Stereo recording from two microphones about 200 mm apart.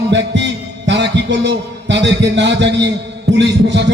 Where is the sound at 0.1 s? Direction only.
60° right (ahead or behind).